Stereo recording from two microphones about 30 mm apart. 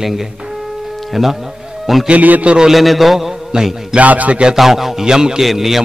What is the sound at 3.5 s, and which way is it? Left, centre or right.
Mantra, centre.